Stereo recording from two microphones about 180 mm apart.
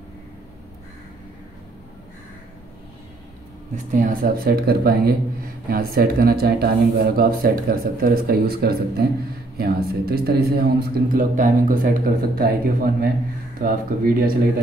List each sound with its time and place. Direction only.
3.7 s speech: 50° right (ahead or behind)